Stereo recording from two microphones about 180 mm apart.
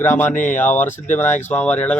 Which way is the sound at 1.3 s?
40° left (ahead or behind).